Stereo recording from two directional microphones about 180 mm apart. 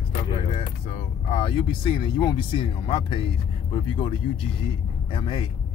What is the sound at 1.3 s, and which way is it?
Speech, 25° left (ahead or behind).